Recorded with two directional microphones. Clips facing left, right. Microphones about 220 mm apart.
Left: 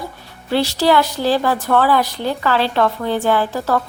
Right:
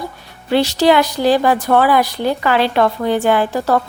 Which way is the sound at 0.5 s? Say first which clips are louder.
Right 3 dB; 20° right (ahead or behind).